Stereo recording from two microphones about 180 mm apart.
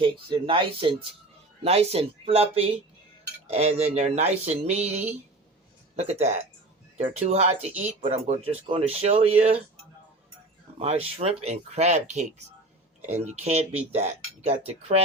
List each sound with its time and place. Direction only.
0.0 s speech: 30° right (ahead or behind)
10.8 s speech: 35° right (ahead or behind)